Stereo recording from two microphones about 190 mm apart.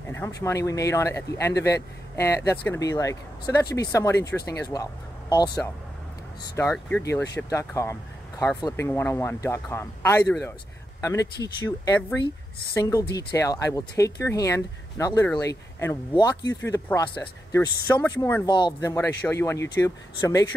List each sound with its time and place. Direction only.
0.1 s speech: 15° left (ahead or behind)
6.6 s speech: 10° left (ahead or behind)